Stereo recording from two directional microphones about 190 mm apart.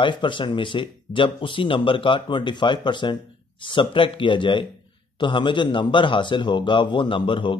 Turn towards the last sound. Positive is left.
turn(degrees=25)  # may be behind; listen again after turning